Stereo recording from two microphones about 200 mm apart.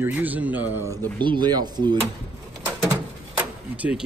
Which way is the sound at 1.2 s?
20° right (ahead or behind).